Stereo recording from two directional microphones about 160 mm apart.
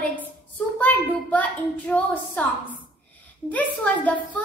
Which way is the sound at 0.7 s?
10° left (ahead or behind).